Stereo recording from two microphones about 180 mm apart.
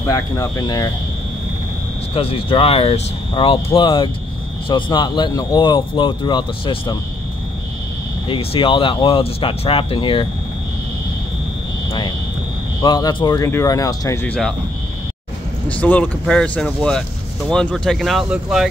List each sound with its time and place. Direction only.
0.0 s speech: 20° left (ahead or behind)
2.1 s speech: 30° left (ahead or behind)
8.3 s speech: 30° left (ahead or behind)
12.8 s speech: 25° left (ahead or behind); by 14.5 s 10° left (ahead or behind)
15.7 s speech: 10° left (ahead or behind)